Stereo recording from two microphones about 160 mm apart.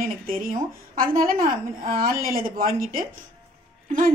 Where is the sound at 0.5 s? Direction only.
60° right (ahead or behind).